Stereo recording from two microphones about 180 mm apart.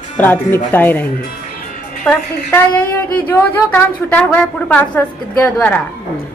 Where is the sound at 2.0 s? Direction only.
10° left (ahead or behind).